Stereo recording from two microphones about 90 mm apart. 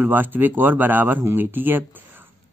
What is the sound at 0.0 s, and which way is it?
A man's voice, 20° right (ahead or behind).